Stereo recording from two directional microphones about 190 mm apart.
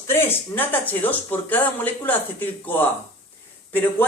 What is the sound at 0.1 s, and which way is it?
Speech, 10° left (ahead or behind).